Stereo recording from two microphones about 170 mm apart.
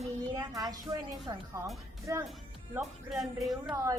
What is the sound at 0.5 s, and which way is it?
A woman's voice, 20° right (ahead or behind).